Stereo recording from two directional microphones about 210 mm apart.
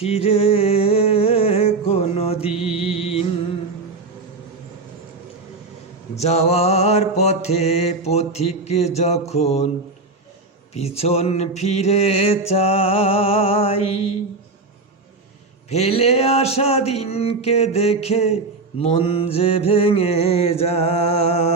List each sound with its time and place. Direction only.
0.0 s a sound: 30° left (ahead or behind)
2.5 s music: 5° right (ahead or behind)
2.7 s music: 30° left (ahead or behind)
6.1 s mantra: 30° left (ahead or behind)
10.8 s mantra: 30° left (ahead or behind)
15.7 s mantra: 30° left (ahead or behind)